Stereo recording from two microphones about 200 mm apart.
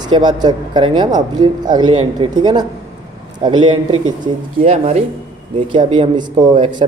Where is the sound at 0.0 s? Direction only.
20° right (ahead or behind).